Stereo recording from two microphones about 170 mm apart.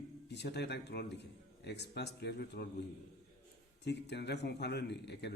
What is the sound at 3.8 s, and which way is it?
A man's voice, 85° left.